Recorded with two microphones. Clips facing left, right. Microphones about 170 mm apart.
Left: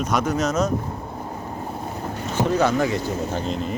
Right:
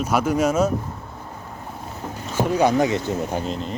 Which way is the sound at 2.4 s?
10° right (ahead or behind).